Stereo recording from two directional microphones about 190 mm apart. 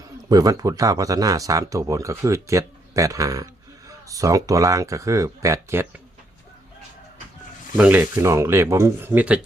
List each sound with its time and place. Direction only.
0.3 s speech: 20° right (ahead or behind)
7.8 s speech: 10° right (ahead or behind)